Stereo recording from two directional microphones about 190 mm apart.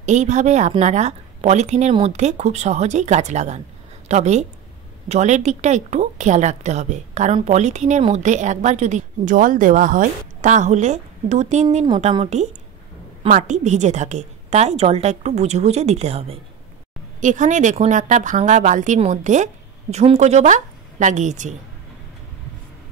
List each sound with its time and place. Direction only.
0.0 s a woman's voice: 40° right (ahead or behind)
11.8 s a woman's voice: 25° right (ahead or behind)